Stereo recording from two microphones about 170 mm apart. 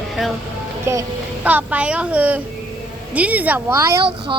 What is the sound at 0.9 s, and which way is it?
Speech, 15° right (ahead or behind).